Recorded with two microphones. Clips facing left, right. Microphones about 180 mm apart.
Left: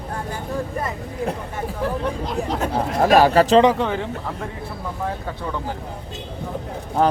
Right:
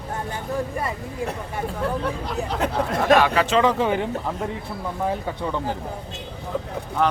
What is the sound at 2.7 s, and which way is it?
Speech, 35° left (ahead or behind).